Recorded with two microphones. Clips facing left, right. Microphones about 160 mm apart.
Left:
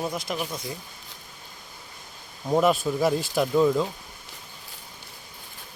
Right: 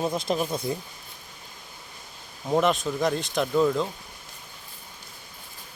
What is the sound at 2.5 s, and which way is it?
Speech, centre (ahead or behind).